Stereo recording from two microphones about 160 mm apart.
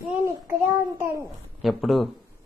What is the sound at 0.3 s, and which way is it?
Child singing, 15° right (ahead or behind).